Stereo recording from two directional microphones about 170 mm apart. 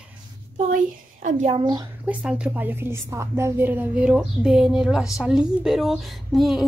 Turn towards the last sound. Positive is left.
turn(degrees=0)  # may be behind; listen again after turning